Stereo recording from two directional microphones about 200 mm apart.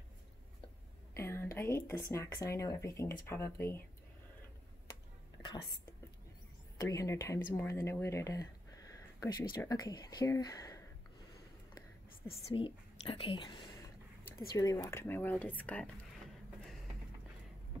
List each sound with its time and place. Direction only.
1.1 s speech: 15° left (ahead or behind)
5.4 s whispering: 25° left (ahead or behind)
6.8 s speech: 15° left (ahead or behind)
12.4 s a woman's voice: 25° left (ahead or behind); by 15.9 s 5° left (ahead or behind)